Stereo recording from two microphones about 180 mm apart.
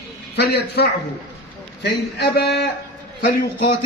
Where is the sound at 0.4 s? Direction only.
65° left (ahead or behind).